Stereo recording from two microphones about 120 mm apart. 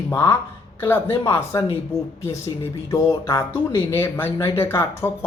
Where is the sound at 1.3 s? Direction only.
20° left (ahead or behind).